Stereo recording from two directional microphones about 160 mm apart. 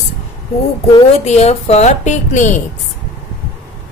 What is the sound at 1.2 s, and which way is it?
A woman's voice, 40° left (ahead or behind).